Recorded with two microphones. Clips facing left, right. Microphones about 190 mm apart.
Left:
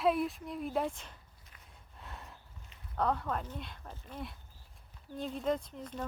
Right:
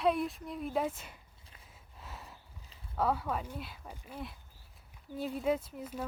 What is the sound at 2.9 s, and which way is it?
Speech, 5° right (ahead or behind).